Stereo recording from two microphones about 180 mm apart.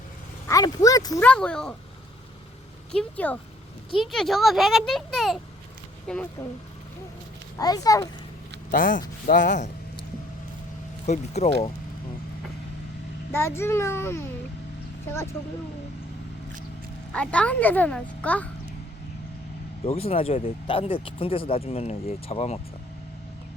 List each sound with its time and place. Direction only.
0.4 s speech: 20° left (ahead or behind)
1.2 s a child's voice: 5° left (ahead or behind)
2.9 s a child's voice: 5° left (ahead or behind)
7.6 s a child's voice: 20° left (ahead or behind)
8.7 s speech: 50° left (ahead or behind)
11.0 s speech: 40° left (ahead or behind)
13.3 s speech: 15° left (ahead or behind)
17.1 s speech: 5° left (ahead or behind)
19.8 s speech: 35° left (ahead or behind)